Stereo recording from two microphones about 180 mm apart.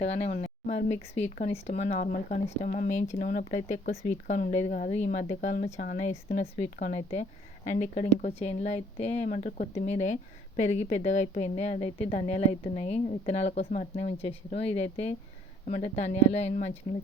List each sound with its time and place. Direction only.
0.0 s a woman's voice: 35° left (ahead or behind)